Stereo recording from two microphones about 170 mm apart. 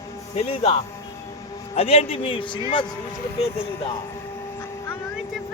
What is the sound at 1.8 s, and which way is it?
Speech, 35° left (ahead or behind).